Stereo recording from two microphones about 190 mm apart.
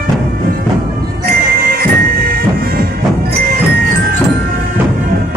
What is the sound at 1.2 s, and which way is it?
Music, 50° right (ahead or behind).